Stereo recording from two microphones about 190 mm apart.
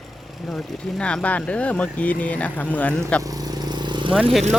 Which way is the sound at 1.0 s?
5° left (ahead or behind).